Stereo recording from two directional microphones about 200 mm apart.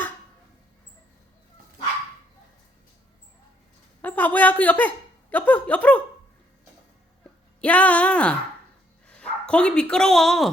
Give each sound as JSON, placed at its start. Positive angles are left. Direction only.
{"t": 4.0, "sound": "a woman's voice", "side_deg": 10}
{"t": 7.6, "sound": "speech", "side_deg": 5}